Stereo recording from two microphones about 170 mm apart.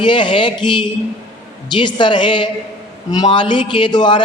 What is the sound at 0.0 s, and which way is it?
A man's voice, 30° left (ahead or behind).